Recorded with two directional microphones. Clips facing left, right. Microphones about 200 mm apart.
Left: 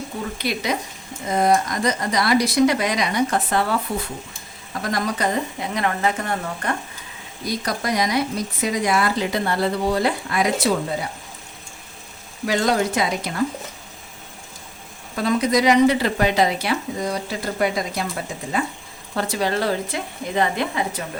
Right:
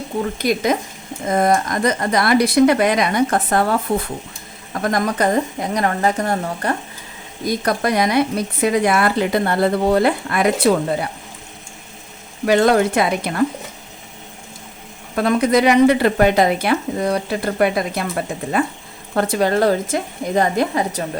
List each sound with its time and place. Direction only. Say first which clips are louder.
0.3 s speech: right 6 dB; 45° right (ahead or behind)
7.4 s speech: right 6 dB; 55° right (ahead or behind)
12.5 s speech: right 6 dB; 60° right (ahead or behind)
15.1 s speech: right 4 dB; 60° right (ahead or behind)
19.1 s speech: right 6 dB; 50° right (ahead or behind)